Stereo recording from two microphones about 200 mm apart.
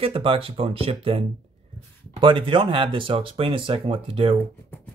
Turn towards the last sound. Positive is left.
turn(degrees=-25)  # may be behind; listen again after turning